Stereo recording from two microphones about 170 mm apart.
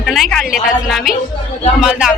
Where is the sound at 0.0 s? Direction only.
Centre (ahead or behind).